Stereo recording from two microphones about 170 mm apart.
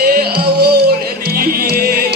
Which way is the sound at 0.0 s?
60° right (ahead or behind).